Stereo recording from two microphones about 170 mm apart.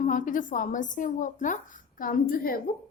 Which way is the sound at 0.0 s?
50° left (ahead or behind).